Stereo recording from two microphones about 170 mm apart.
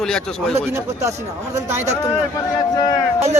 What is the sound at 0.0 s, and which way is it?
Speech, 5° left (ahead or behind).